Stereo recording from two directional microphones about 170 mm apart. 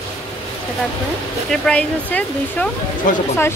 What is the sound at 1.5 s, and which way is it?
Speech, 5° left (ahead or behind).